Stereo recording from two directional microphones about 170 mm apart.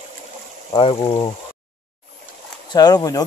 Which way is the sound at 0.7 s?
30° left (ahead or behind).